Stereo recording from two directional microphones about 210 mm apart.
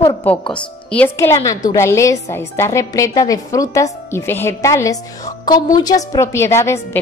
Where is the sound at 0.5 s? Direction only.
10° left (ahead or behind).